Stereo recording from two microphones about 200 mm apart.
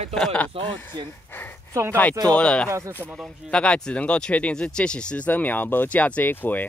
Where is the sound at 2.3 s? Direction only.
5° left (ahead or behind).